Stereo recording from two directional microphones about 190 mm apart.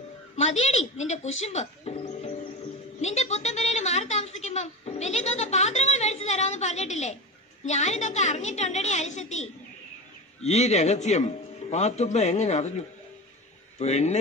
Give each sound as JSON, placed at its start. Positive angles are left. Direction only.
{"t": 0.4, "sound": "a woman's voice", "side_deg": 35}